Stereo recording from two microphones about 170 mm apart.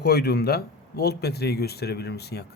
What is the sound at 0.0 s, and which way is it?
Speech, 70° left (ahead or behind).